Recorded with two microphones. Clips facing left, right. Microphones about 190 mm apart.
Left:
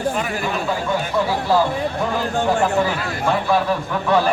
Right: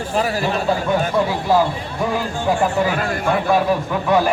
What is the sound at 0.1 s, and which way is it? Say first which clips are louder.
Speech: right 3 dB; 35° right (ahead or behind).